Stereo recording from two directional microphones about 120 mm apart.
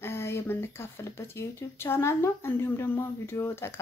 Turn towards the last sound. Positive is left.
turn(degrees=20)  # may be behind; listen again after turning